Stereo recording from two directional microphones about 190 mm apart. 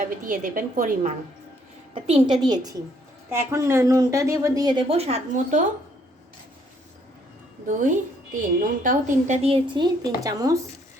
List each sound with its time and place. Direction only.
0.0 s a woman's voice: 40° right (ahead or behind)
2.0 s a woman's voice: 30° right (ahead or behind)
7.7 s a woman's voice: 45° right (ahead or behind); by 10.6 s 20° right (ahead or behind)